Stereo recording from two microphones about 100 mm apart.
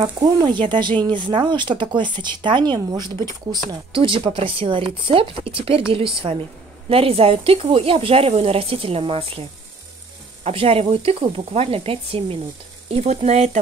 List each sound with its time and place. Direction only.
0.2 s speech: 45° right (ahead or behind); by 9.4 s 70° right (ahead or behind)
10.4 s stir: 75° right (ahead or behind)
12.9 s speech: 90° right